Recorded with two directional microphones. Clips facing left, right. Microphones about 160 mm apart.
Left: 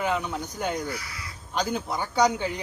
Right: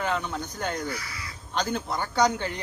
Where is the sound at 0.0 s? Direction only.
10° left (ahead or behind).